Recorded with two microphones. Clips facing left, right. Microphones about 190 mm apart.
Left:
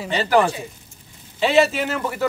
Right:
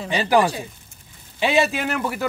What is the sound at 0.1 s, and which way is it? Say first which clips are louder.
Speech: even; 15° right (ahead or behind).